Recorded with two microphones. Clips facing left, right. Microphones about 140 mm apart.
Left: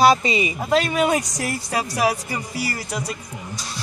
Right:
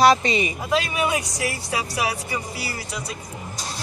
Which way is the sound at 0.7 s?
55° left (ahead or behind).